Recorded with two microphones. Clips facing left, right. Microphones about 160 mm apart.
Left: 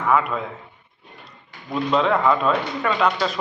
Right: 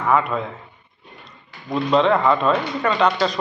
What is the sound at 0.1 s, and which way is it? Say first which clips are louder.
Speech: right 1 dB; 5° left (ahead or behind).